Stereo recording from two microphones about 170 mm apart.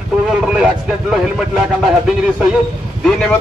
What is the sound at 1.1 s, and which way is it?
A man's voice, 5° right (ahead or behind).